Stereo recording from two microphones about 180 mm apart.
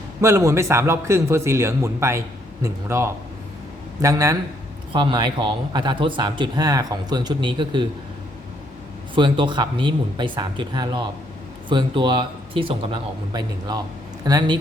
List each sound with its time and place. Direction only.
0.2 s a man's voice: 15° right (ahead or behind)
9.1 s a man's voice: 25° right (ahead or behind)